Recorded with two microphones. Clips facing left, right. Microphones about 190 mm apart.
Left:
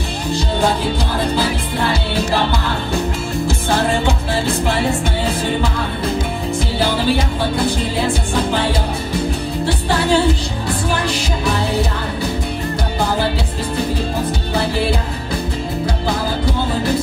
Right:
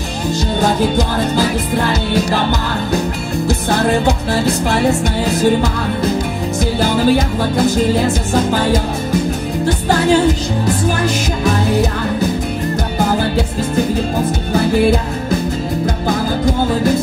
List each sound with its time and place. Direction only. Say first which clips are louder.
4.5 s music: right 4 dB; 40° right (ahead or behind)
6.8 s music: right 4 dB; 45° right (ahead or behind)
9.7 s music: right 4 dB; 45° right (ahead or behind)